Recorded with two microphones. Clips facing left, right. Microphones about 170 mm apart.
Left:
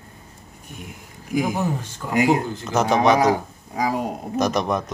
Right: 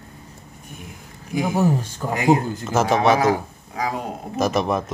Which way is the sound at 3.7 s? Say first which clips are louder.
Left 3 dB; 10° left (ahead or behind).